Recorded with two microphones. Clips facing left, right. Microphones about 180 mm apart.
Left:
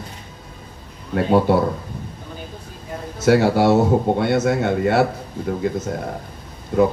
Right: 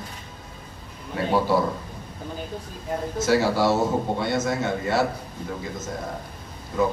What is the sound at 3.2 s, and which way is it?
A man's voice, 60° left (ahead or behind).